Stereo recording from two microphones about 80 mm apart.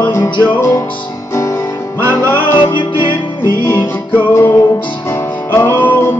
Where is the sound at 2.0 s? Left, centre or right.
Left.